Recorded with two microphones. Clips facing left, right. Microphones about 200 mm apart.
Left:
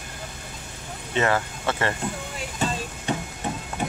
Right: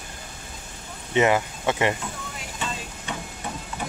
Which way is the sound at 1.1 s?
15° right (ahead or behind).